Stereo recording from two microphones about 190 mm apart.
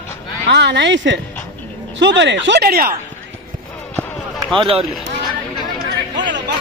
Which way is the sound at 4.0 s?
5° left (ahead or behind).